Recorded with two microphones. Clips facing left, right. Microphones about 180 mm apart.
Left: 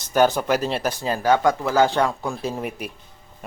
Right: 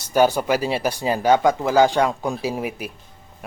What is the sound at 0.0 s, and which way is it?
Speech, 10° right (ahead or behind).